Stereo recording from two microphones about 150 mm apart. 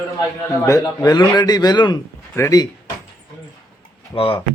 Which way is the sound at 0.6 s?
20° left (ahead or behind).